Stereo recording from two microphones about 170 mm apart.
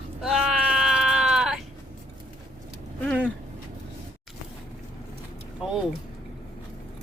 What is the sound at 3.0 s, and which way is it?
Speech, 10° left (ahead or behind).